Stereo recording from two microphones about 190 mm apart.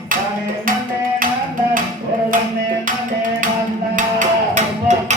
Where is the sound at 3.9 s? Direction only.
40° right (ahead or behind).